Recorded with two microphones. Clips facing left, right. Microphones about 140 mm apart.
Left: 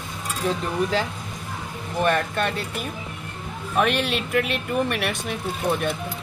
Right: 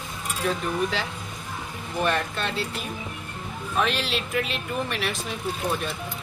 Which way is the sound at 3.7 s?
60° left (ahead or behind).